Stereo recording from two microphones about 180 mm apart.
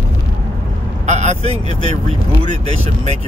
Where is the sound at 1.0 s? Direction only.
40° right (ahead or behind).